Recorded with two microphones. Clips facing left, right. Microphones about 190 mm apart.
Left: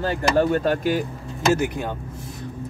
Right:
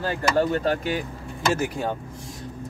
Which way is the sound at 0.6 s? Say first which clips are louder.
Left 3 dB; 45° left (ahead or behind).